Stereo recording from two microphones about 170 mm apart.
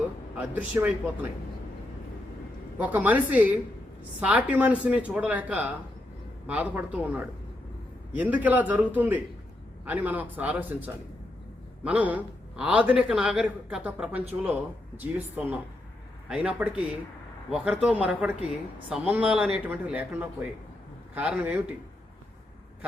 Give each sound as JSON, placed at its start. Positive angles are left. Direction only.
{"t": 0.3, "sound": "a woman's voice", "side_deg": -10}
{"t": 2.7, "sound": "a woman's voice", "side_deg": -10}